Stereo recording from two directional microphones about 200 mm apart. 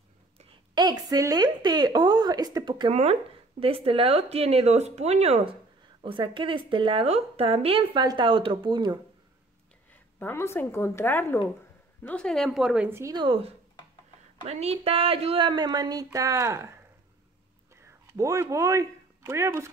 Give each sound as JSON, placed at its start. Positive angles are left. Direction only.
{"t": 0.7, "sound": "a woman's voice", "side_deg": -20}
{"t": 10.1, "sound": "a woman's voice", "side_deg": 10}
{"t": 17.8, "sound": "speech", "side_deg": -15}